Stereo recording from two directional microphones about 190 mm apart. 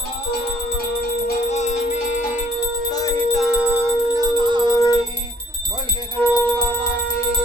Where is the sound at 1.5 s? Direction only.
35° left (ahead or behind).